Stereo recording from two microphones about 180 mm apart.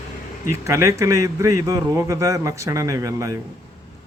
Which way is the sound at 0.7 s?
15° right (ahead or behind).